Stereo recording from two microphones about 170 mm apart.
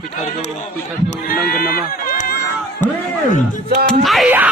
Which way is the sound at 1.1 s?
60° left (ahead or behind).